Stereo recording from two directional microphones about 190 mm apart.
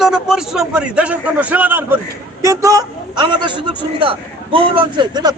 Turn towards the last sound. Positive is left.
turn(degrees=-20)  # may be behind; listen again after turning